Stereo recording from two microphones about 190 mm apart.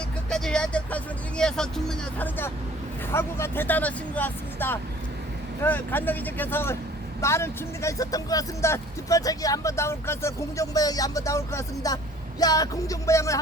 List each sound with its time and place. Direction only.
0.3 s speech: 5° left (ahead or behind)